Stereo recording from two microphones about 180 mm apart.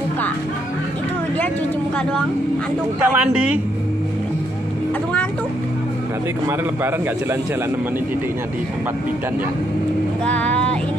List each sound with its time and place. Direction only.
3.0 s speech: 10° right (ahead or behind)
10.2 s speech: 5° left (ahead or behind)